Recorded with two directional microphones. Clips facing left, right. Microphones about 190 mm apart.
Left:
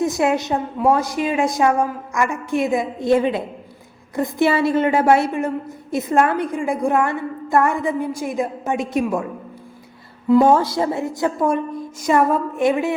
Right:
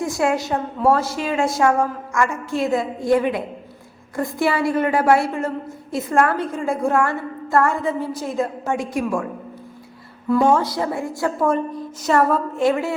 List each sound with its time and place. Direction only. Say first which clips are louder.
0.0 s a woman's voice: left 2 dB; 20° left (ahead or behind)
10.4 s a woman's voice: left 2 dB; 30° left (ahead or behind)